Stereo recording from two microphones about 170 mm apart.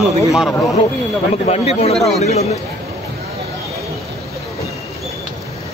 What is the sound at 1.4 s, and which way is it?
A man's voice, 40° left (ahead or behind).